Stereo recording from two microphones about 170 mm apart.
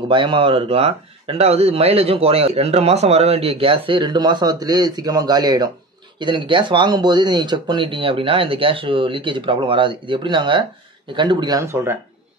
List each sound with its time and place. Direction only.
0.1 s speech: 30° right (ahead or behind)